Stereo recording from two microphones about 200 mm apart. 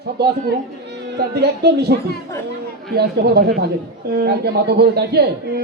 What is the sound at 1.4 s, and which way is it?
A man's voice, 55° right (ahead or behind).